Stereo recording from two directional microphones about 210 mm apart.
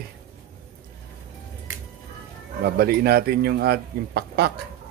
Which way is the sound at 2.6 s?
50° right (ahead or behind).